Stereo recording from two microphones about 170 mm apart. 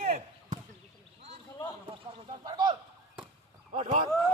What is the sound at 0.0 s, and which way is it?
Basketball bounce, 45° right (ahead or behind).